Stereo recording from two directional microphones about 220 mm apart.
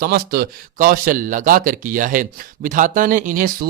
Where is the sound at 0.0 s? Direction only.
45° right (ahead or behind).